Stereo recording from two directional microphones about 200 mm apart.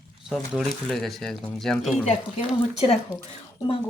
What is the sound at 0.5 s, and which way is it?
Speech, centre (ahead or behind).